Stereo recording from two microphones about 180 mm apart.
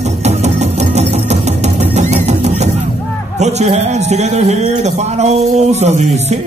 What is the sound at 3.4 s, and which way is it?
A man's voice, 40° right (ahead or behind).